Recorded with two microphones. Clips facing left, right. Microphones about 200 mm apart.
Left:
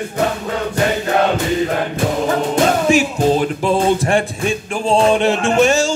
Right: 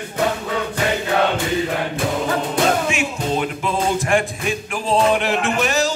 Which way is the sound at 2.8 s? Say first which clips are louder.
Left 8 dB; 35° left (ahead or behind).